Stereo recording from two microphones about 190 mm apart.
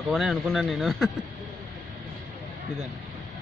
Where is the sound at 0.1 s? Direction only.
Centre (ahead or behind).